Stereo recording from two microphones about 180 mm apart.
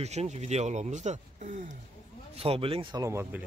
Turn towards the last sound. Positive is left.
turn(degrees=-15)  # may be behind; listen again after turning